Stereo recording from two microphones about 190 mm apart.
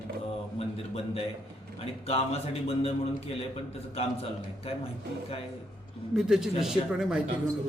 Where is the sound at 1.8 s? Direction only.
30° left (ahead or behind).